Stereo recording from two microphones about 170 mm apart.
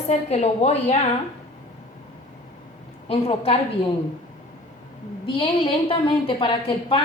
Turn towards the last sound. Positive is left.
turn(degrees=30)  # may be behind; listen again after turning